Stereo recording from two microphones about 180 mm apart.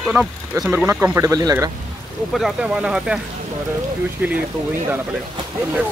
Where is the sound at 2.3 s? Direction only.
5° right (ahead or behind).